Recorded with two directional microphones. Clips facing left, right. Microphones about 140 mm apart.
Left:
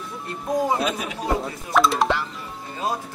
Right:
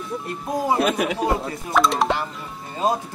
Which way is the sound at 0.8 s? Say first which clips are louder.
Right 5 dB; 65° right (ahead or behind).